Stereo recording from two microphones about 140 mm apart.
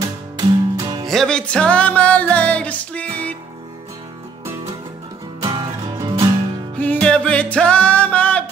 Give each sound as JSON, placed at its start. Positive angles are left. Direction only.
{"t": 0.0, "sound": "music", "side_deg": -25}
{"t": 1.0, "sound": "music", "side_deg": 5}
{"t": 5.4, "sound": "music", "side_deg": -30}
{"t": 6.8, "sound": "music", "side_deg": 10}